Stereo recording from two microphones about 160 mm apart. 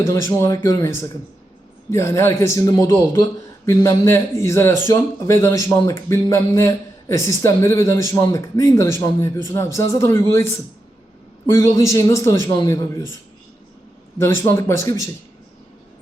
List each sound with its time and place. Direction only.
0.0 s a man's voice: 20° left (ahead or behind)
14.2 s a man's voice: 15° left (ahead or behind)